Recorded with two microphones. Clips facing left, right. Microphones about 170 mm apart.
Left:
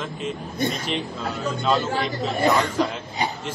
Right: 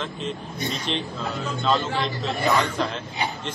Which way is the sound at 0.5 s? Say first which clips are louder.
Left 8 dB; 50° left (ahead or behind).